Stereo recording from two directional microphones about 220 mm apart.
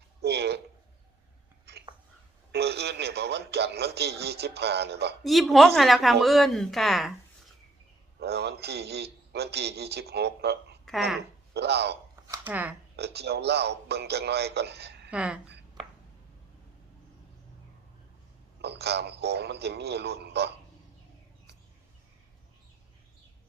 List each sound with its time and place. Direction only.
0.2 s speech: 50° right (ahead or behind)
1.7 s whispering: 50° right (ahead or behind)
2.5 s speech: 50° right (ahead or behind)
5.2 s a woman's voice: centre (ahead or behind)
8.2 s speech: 50° right (ahead or behind)
10.8 s speech: centre (ahead or behind)
11.5 s speech: 50° right (ahead or behind)
12.3 s a sound: 5° right (ahead or behind)
13.0 s speech: 50° right (ahead or behind)
15.1 s a woman's voice: 5° right (ahead or behind)
18.6 s speech: 50° right (ahead or behind)